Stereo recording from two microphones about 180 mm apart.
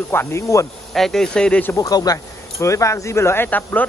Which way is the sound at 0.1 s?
15° left (ahead or behind).